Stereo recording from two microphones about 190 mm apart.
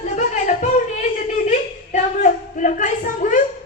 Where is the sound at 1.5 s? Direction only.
40° left (ahead or behind).